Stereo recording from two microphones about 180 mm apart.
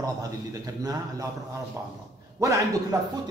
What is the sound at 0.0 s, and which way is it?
A man's voice, 20° right (ahead or behind).